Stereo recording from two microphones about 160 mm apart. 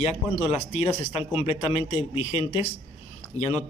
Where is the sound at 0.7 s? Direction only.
40° left (ahead or behind).